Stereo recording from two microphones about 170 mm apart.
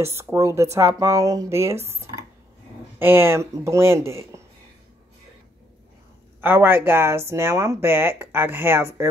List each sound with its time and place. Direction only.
0.0 s speech: 15° right (ahead or behind)
3.0 s speech: 15° right (ahead or behind)
6.4 s speech: 15° right (ahead or behind)